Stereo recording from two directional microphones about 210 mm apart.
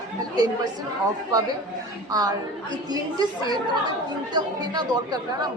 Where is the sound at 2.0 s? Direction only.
20° right (ahead or behind).